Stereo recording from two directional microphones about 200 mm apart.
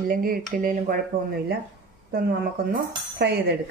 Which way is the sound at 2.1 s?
50° right (ahead or behind).